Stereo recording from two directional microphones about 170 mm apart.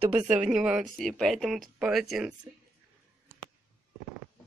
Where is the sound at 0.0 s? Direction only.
35° right (ahead or behind).